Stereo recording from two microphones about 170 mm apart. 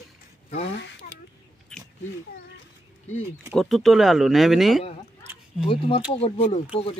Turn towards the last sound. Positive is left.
turn(degrees=35)  # may be behind; listen again after turning